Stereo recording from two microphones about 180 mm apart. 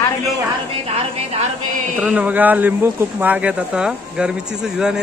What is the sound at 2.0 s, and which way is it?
Speech, 10° right (ahead or behind).